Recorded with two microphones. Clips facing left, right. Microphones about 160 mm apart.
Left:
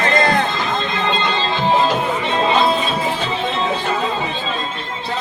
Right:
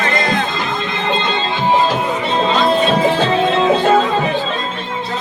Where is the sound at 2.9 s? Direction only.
90° right.